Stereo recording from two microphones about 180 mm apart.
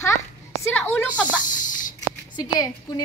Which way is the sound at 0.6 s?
15° left (ahead or behind).